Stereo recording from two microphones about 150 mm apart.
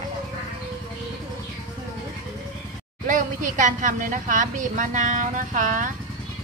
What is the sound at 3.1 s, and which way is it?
A woman's voice, 60° right (ahead or behind).